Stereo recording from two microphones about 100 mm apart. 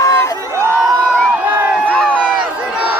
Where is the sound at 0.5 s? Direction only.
25° right (ahead or behind).